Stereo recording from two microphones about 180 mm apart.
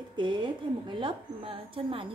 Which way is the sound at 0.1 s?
25° right (ahead or behind).